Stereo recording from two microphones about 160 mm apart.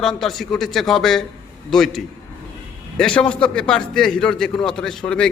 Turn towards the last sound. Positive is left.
turn(degrees=5)  # may be behind; listen again after turning